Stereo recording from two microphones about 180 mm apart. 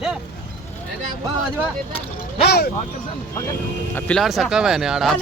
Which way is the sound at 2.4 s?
65° left (ahead or behind).